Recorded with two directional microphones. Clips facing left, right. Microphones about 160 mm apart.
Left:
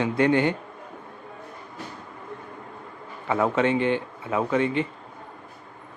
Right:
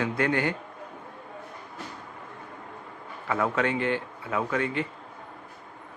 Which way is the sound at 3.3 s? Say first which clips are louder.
Left 4 dB; 25° left (ahead or behind).